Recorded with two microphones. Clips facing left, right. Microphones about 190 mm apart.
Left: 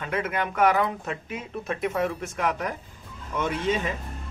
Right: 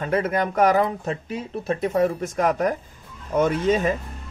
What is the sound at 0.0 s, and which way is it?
Speech, 40° right (ahead or behind).